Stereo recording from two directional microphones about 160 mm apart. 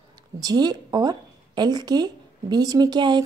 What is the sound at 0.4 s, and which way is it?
A woman's voice, 25° right (ahead or behind).